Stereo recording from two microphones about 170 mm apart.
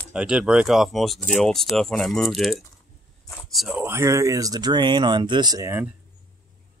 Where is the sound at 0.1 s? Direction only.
5° right (ahead or behind).